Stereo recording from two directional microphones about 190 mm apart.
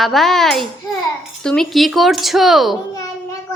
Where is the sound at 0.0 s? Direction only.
Centre (ahead or behind).